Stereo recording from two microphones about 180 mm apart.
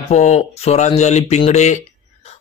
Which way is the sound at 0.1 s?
40° left (ahead or behind).